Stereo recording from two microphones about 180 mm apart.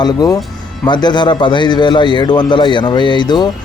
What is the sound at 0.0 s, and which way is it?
A man's voice, 20° left (ahead or behind).